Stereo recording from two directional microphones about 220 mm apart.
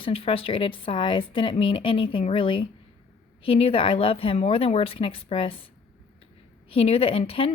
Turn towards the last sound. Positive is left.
turn(degrees=25)  # may be behind; listen again after turning